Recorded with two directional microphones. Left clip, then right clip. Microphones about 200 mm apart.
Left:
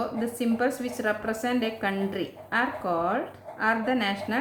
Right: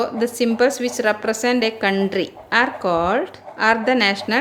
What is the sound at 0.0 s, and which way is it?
A woman's voice, 40° right (ahead or behind).